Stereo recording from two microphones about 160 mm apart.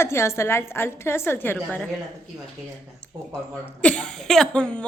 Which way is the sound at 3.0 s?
5° left (ahead or behind).